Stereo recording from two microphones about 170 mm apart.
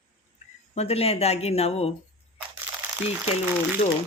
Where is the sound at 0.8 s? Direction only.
35° left (ahead or behind).